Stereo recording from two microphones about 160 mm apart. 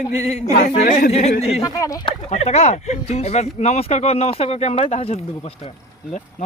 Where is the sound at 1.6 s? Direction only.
20° left (ahead or behind).